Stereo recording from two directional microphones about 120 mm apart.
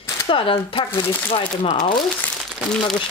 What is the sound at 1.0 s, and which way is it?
Speech, 20° left (ahead or behind).